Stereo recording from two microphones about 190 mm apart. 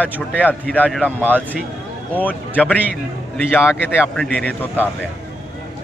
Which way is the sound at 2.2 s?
10° left (ahead or behind).